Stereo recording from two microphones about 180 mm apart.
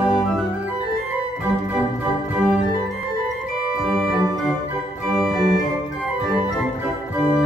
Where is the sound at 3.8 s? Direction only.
Centre (ahead or behind).